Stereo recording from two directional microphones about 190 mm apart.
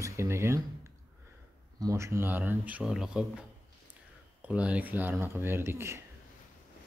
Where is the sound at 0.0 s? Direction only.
15° right (ahead or behind).